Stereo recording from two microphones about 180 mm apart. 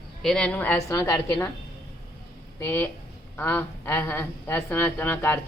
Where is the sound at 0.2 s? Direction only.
5° left (ahead or behind).